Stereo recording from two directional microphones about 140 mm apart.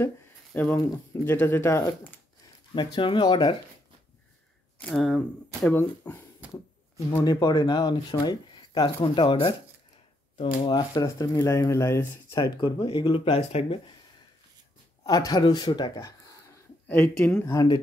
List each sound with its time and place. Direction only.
0.5 s speech: 5° left (ahead or behind)
0.7 s speech: 15° left (ahead or behind)
2.7 s speech: 35° left (ahead or behind)
4.8 s speech: centre (ahead or behind)
5.8 s speech: 15° left (ahead or behind)
7.2 s speech: 25° left (ahead or behind)
10.8 s speech: 25° left (ahead or behind)
12.4 s speech: 35° left (ahead or behind)
15.0 s speech: 25° left (ahead or behind)
16.9 s speech: 10° left (ahead or behind)
17.5 s speech: 25° left (ahead or behind)